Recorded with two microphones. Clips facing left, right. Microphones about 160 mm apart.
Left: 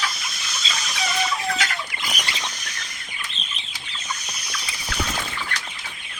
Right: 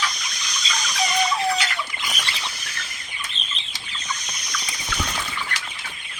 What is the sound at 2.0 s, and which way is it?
Rodents, 10° left (ahead or behind).